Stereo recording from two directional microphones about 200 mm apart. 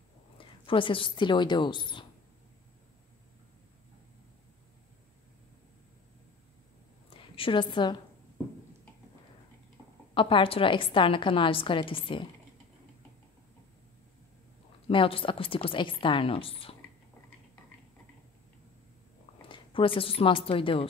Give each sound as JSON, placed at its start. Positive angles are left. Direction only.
{"t": 0.4, "sound": "a woman's voice", "side_deg": 25}
{"t": 7.1, "sound": "a sound", "side_deg": 25}
{"t": 10.1, "sound": "a woman's voice", "side_deg": 25}
{"t": 14.9, "sound": "a woman's voice", "side_deg": 25}
{"t": 19.4, "sound": "a woman's voice", "side_deg": 25}